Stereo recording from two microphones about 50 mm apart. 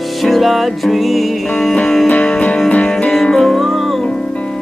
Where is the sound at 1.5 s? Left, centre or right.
Centre.